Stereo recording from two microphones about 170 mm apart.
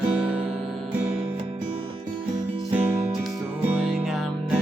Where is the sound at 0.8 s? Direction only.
35° right (ahead or behind).